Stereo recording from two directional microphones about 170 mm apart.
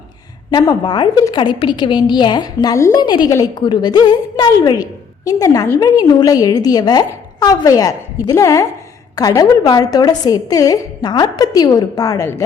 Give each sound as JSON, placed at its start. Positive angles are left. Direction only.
{"t": 0.5, "sound": "a woman's voice", "side_deg": 25}